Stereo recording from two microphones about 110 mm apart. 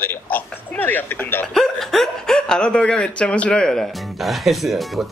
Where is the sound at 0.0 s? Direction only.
20° left (ahead or behind).